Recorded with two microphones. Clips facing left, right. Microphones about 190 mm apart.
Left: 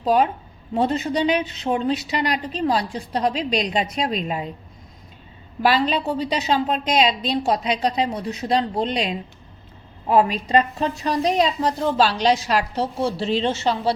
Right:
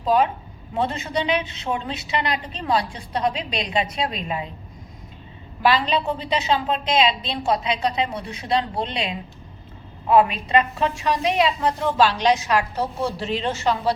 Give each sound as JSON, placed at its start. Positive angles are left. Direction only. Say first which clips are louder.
{"t": 0.0, "sound": "a woman's voice", "louder": "left 1 dB", "side_deg": 40}
{"t": 5.8, "sound": "a woman's voice", "louder": "left 2 dB", "side_deg": 40}